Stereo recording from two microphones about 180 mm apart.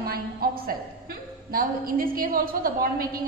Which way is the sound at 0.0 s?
55° right (ahead or behind).